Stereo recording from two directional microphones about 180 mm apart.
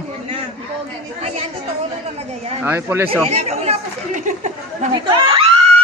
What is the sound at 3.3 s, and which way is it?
Chatter, 35° right (ahead or behind).